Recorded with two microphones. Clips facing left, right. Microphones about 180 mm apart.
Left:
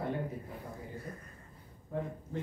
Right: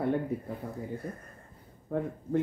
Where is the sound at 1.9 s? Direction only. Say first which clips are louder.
Right 5 dB; 60° right (ahead or behind).